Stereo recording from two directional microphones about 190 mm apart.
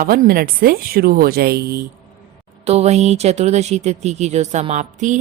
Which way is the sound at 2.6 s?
35° right (ahead or behind).